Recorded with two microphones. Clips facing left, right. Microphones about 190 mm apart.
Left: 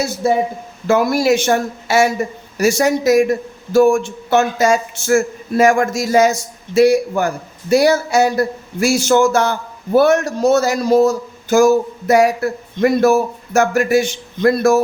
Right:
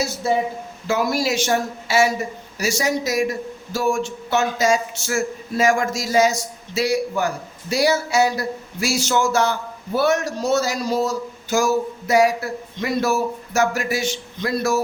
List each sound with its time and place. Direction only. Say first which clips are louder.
0.9 s speech: left 7 dB; 55° left (ahead or behind)